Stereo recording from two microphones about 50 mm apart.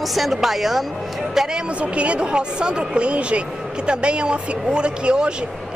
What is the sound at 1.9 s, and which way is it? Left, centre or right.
A woman's voice, right.